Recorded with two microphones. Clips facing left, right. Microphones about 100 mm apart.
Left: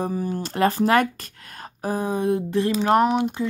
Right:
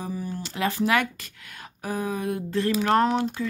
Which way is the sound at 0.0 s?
50° left (ahead or behind).